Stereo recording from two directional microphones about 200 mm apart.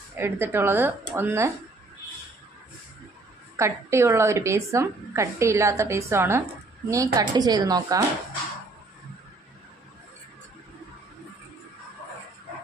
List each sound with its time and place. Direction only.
0.1 s a woman's voice: 10° right (ahead or behind)
3.5 s a woman's voice: 15° right (ahead or behind)